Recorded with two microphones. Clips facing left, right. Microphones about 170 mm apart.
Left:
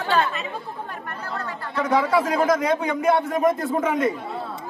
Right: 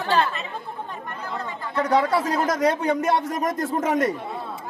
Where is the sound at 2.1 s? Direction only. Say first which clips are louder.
Left 3 dB; 35° right (ahead or behind).